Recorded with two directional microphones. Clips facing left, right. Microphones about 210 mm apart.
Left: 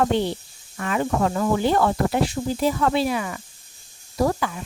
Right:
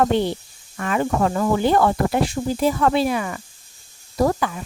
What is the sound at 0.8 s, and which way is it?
Speech, 55° right (ahead or behind).